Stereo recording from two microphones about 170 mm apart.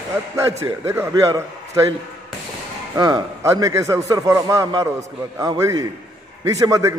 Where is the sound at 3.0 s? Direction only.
20° right (ahead or behind).